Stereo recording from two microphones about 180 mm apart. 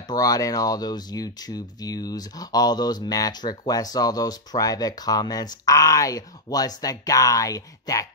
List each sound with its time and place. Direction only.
0.1 s speech: 20° left (ahead or behind)